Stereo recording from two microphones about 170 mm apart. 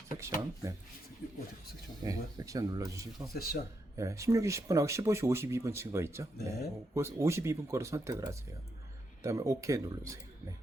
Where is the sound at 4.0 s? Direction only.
20° right (ahead or behind).